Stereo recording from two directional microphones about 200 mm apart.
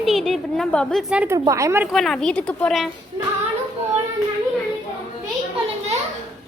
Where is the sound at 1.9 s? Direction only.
Centre (ahead or behind).